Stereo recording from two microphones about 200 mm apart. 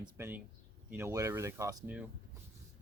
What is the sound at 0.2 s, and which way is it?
Speech, 10° right (ahead or behind).